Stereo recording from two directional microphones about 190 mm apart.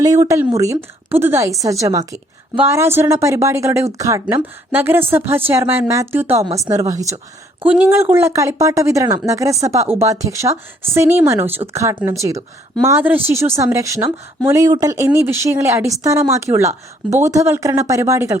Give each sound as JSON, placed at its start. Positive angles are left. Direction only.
{"t": 0.0, "sound": "a woman's voice", "side_deg": -20}